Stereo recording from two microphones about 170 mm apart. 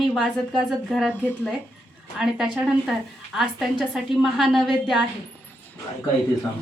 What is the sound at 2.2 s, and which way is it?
Speech, 5° right (ahead or behind).